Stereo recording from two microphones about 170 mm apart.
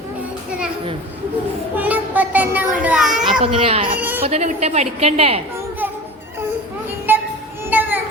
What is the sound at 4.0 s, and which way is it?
Speech, 10° right (ahead or behind).